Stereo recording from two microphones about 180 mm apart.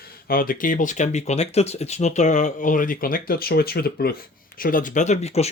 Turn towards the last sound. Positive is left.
turn(degrees=40)  # may be behind; listen again after turning